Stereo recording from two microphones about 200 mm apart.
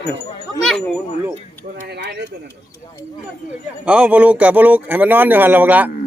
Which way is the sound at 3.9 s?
5° right (ahead or behind).